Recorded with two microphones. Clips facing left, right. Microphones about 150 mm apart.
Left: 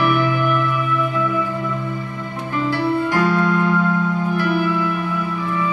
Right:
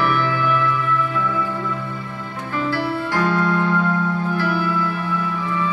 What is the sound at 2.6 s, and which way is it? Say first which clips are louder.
Music: left 4 dB; 15° left (ahead or behind).